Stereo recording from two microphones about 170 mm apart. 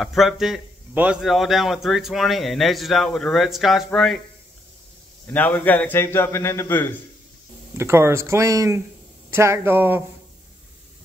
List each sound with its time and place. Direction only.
0.0 s a man's voice: centre (ahead or behind)
5.2 s a man's voice: 10° left (ahead or behind)
7.7 s speech: 15° right (ahead or behind)